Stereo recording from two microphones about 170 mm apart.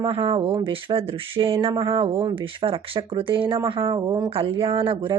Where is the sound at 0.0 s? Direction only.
30° right (ahead or behind).